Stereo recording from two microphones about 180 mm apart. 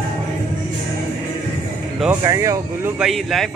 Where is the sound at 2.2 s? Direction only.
20° right (ahead or behind).